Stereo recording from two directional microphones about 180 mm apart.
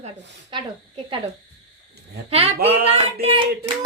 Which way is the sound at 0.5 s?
25° right (ahead or behind).